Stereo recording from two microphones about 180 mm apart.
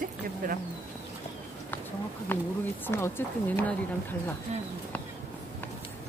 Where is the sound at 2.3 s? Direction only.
10° left (ahead or behind).